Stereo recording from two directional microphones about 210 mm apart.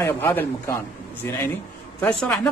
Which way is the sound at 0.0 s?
10° left (ahead or behind).